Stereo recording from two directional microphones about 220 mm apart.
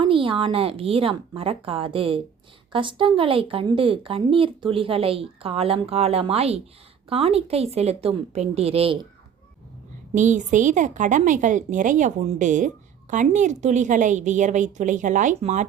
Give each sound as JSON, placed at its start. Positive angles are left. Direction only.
{"t": 0.0, "sound": "a woman's voice", "side_deg": -25}
{"t": 10.2, "sound": "a woman's voice", "side_deg": -35}